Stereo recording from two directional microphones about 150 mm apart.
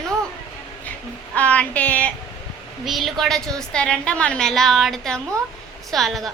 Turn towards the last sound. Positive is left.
turn(degrees=0)  # may be behind; listen again after turning